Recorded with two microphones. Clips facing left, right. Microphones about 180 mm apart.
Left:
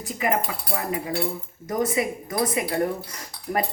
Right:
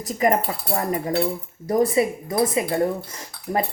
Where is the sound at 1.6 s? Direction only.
30° right (ahead or behind).